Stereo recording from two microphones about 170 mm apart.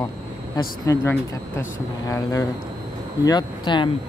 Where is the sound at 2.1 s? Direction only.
20° left (ahead or behind).